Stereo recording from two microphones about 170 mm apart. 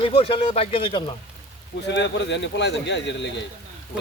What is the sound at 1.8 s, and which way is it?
Speech, 90° left.